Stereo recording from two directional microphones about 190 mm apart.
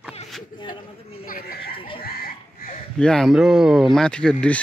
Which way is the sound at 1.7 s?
30° left (ahead or behind).